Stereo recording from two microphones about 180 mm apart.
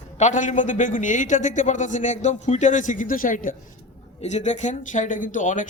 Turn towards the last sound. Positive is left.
turn(degrees=45)  # may be behind; listen again after turning